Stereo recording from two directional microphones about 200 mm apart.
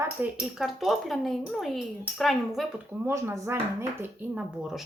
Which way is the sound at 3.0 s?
15° right (ahead or behind).